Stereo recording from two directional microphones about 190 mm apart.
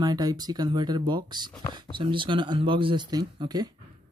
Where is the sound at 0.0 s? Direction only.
20° right (ahead or behind).